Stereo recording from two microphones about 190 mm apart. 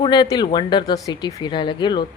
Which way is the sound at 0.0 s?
25° left (ahead or behind).